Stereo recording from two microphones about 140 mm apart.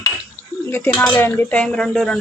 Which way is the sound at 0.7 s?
15° left (ahead or behind).